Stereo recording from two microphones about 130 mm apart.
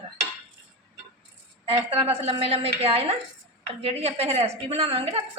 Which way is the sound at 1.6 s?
45° right (ahead or behind).